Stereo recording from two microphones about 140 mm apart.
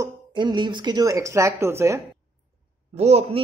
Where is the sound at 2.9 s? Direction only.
50° right (ahead or behind).